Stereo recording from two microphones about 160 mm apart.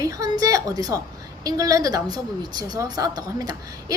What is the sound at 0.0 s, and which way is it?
A woman's voice, 20° right (ahead or behind).